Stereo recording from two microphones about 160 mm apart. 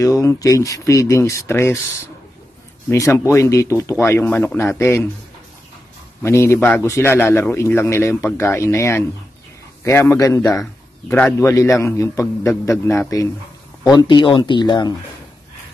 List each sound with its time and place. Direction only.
0.0 s a man's voice: 20° left (ahead or behind)
2.9 s a man's voice: 15° left (ahead or behind)
6.2 s a man's voice: 15° left (ahead or behind)